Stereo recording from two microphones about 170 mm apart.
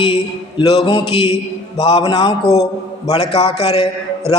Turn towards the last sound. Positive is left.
turn(degrees=35)  # may be behind; listen again after turning